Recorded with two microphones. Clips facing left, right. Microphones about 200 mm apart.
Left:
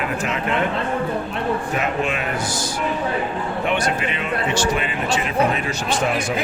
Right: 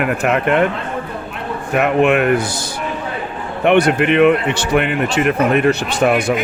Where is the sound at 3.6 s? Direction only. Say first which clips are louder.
Right 11 dB; 60° right (ahead or behind).